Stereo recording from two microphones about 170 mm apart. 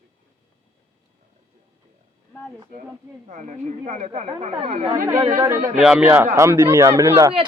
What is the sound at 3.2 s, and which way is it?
Speech, 45° right (ahead or behind).